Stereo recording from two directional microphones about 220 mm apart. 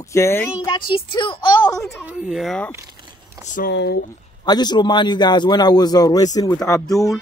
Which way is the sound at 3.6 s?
45° left (ahead or behind).